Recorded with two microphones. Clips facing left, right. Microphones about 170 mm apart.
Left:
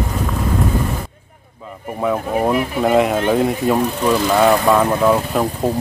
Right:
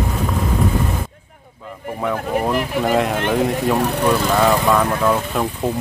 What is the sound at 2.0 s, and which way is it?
Speech, 5° left (ahead or behind).